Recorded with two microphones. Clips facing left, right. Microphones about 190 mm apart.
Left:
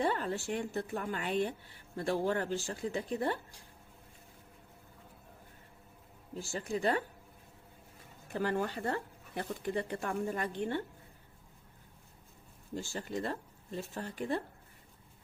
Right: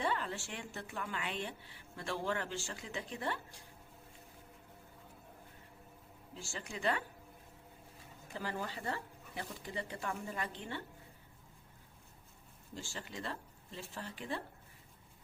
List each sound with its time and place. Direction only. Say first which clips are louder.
0.0 s speech: left 5 dB; 45° left (ahead or behind)
6.3 s speech: left 9 dB; 40° left (ahead or behind)
8.3 s speech: left 8 dB; 55° left (ahead or behind)
12.7 s speech: left 8 dB; 45° left (ahead or behind)